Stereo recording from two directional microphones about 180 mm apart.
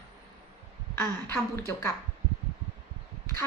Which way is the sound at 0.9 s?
15° left (ahead or behind).